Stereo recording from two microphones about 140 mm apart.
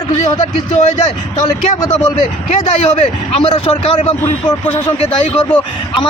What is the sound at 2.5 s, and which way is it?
A man's voice, 50° left (ahead or behind).